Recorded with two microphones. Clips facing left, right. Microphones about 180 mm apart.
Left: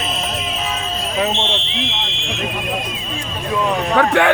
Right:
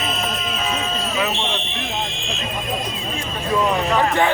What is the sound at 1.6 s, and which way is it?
Fire alarm, 90° left.